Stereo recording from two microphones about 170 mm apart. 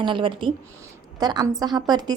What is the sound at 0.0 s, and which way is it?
A woman's voice, 30° right (ahead or behind).